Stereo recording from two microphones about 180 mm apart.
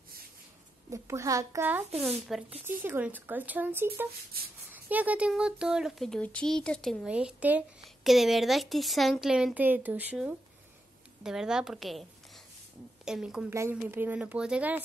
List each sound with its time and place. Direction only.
0.8 s speech: 15° right (ahead or behind)
2.0 s speech: centre (ahead or behind)
2.6 s speech: 10° right (ahead or behind)
4.3 s speech: 55° right (ahead or behind)
4.8 s a woman's voice: 10° right (ahead or behind)
13.5 s speech: 15° right (ahead or behind)